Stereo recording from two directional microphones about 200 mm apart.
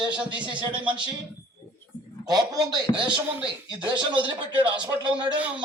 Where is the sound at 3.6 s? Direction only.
25° right (ahead or behind).